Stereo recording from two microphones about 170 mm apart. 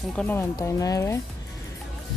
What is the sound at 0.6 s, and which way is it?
Speech, 20° left (ahead or behind).